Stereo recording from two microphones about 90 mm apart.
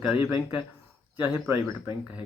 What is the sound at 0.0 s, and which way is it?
Speech, 15° right (ahead or behind).